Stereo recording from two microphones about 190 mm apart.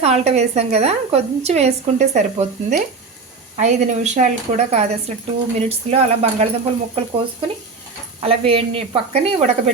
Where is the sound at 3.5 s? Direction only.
40° right (ahead or behind).